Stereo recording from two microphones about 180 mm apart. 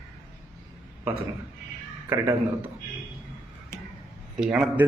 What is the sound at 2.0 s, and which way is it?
Speech, 15° right (ahead or behind).